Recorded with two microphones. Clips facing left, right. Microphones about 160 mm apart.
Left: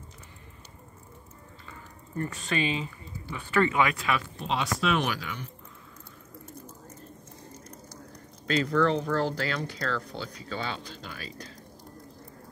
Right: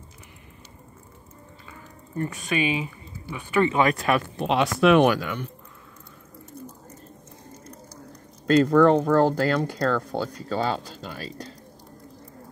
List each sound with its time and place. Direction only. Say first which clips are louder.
1.7 s speech: right 2 dB; 15° right (ahead or behind)
3.7 s speech: right 5 dB; 40° right (ahead or behind)
8.5 s speech: right 8 dB; 45° right (ahead or behind)